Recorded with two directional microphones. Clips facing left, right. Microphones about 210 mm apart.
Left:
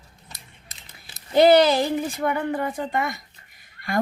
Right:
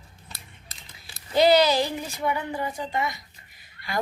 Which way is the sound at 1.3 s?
55° left (ahead or behind).